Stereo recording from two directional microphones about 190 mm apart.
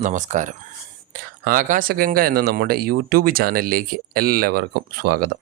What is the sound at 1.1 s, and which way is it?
Speech, 50° right (ahead or behind).